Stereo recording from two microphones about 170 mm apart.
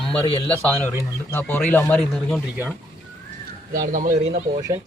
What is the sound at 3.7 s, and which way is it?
Speech, 50° right (ahead or behind).